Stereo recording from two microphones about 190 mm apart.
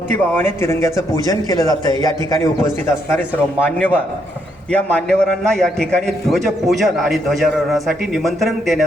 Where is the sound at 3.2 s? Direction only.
10° left (ahead or behind).